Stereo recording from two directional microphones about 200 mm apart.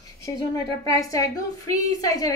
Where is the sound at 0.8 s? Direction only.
15° left (ahead or behind).